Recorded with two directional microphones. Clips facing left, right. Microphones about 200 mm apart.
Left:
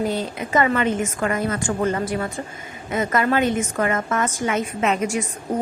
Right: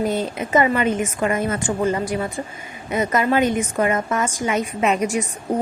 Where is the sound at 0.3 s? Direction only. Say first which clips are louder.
Right 2 dB; 20° right (ahead or behind).